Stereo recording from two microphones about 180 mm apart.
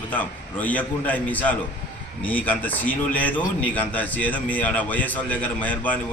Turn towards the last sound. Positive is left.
turn(degrees=10)  # may be behind; listen again after turning